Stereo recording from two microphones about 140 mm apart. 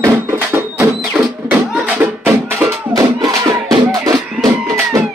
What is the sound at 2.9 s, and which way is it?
Music, 25° right (ahead or behind).